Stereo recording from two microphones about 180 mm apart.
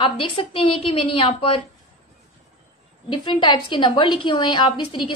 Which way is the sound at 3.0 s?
25° left (ahead or behind).